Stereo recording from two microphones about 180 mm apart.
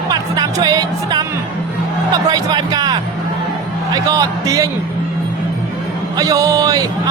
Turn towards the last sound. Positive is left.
turn(degrees=-20)  # may be behind; listen again after turning